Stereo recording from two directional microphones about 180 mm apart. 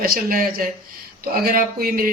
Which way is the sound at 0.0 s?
55° right (ahead or behind).